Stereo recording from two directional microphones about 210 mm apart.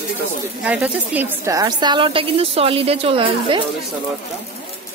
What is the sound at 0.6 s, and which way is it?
A woman's voice, 5° right (ahead or behind).